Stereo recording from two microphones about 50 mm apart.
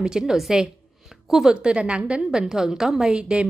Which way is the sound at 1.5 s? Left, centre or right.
Right.